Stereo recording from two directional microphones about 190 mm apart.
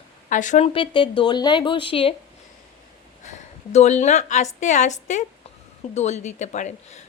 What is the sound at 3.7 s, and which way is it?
A woman's voice, 35° left (ahead or behind).